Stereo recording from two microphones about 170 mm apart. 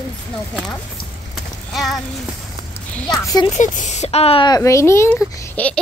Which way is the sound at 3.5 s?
45° left (ahead or behind).